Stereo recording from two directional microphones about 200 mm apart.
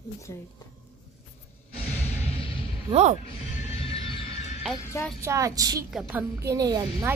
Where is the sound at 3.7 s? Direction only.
30° left (ahead or behind).